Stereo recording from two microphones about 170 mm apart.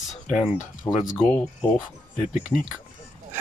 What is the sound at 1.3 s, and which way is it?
Speech, 10° left (ahead or behind).